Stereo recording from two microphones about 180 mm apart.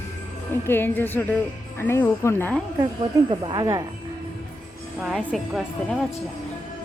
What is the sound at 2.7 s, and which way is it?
Speech, 25° right (ahead or behind).